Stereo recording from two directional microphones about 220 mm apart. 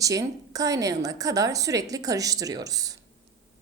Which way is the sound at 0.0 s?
15° right (ahead or behind).